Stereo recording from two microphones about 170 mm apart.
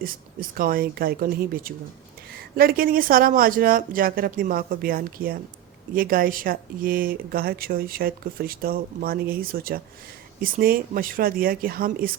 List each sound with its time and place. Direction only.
0.0 s speech: 55° right (ahead or behind)